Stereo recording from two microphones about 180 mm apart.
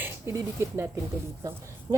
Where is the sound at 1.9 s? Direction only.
20° right (ahead or behind).